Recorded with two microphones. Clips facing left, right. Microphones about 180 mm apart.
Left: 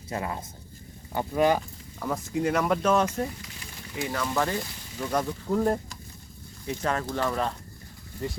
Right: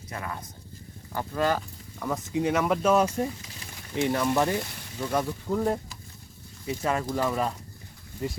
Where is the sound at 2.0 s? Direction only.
Centre (ahead or behind); by 4.6 s 15° right (ahead or behind).